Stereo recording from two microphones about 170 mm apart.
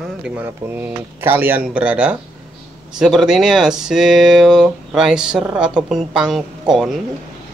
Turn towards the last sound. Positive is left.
turn(degrees=0)  # may be behind; listen again after turning